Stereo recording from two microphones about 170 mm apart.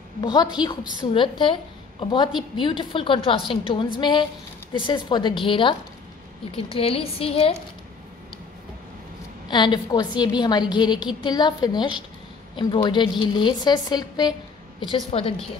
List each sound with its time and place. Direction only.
0.2 s a woman's voice: 25° left (ahead or behind)
9.5 s a woman's voice: 25° left (ahead or behind)